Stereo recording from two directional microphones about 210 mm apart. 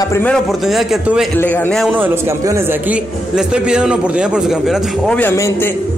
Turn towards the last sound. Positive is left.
turn(degrees=10)  # may be behind; listen again after turning